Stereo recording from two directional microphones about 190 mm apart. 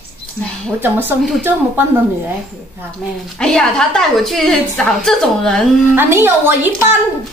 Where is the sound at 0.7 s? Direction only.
10° right (ahead or behind).